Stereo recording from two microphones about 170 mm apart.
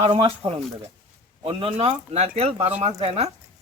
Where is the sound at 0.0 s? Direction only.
35° right (ahead or behind).